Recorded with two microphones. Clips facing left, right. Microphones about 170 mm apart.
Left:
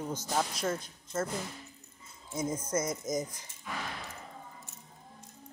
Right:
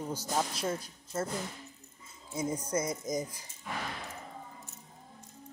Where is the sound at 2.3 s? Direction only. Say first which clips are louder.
Even; 35° right (ahead or behind).